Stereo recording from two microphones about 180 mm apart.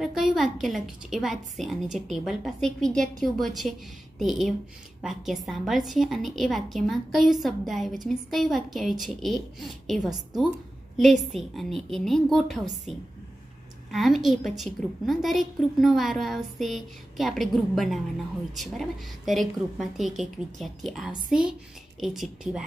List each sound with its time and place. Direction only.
0.0 s a woman's voice: centre (ahead or behind)
10.0 s a woman's voice: 20° right (ahead or behind)
11.3 s a woman's voice: centre (ahead or behind)